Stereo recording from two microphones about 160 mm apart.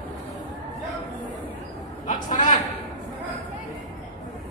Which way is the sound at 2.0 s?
55° left (ahead or behind).